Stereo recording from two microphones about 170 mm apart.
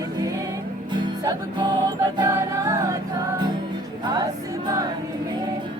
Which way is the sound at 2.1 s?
20° right (ahead or behind).